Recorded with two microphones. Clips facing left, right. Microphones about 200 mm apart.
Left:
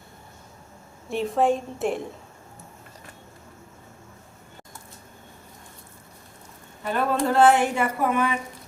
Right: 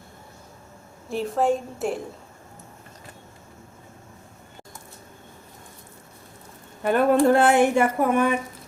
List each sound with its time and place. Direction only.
1.1 s a woman's voice: centre (ahead or behind)
6.8 s speech: 55° right (ahead or behind)